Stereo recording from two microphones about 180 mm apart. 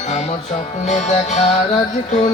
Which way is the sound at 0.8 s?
40° left (ahead or behind).